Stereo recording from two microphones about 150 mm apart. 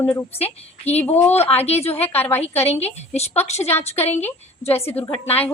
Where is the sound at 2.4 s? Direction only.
45° left (ahead or behind).